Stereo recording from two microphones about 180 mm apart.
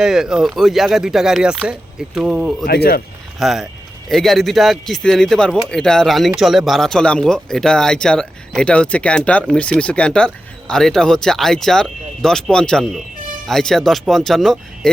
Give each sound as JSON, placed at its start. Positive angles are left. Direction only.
{"t": 0.0, "sound": "speech", "side_deg": -5}
{"t": 2.6, "sound": "speech", "side_deg": 60}
{"t": 3.3, "sound": "speech", "side_deg": 0}